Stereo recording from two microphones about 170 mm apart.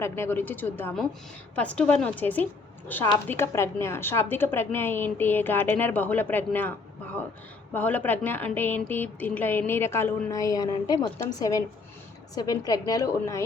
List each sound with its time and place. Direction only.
0.0 s a woman's voice: 15° left (ahead or behind)